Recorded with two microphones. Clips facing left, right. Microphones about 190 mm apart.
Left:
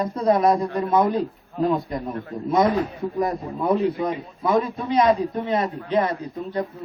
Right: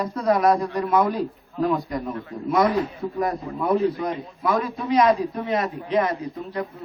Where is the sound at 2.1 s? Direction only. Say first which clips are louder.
Left 1 dB; 40° left (ahead or behind).